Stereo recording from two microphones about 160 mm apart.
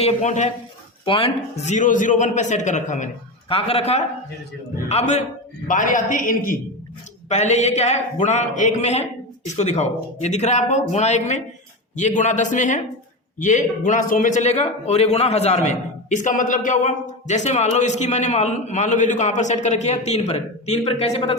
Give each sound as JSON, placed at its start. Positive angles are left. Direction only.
{"t": 0.0, "sound": "a man's voice", "side_deg": 45}
{"t": 1.0, "sound": "a man's voice", "side_deg": 35}
{"t": 3.5, "sound": "a man's voice", "side_deg": 40}
{"t": 5.6, "sound": "a man's voice", "side_deg": 55}
{"t": 7.3, "sound": "a man's voice", "side_deg": 45}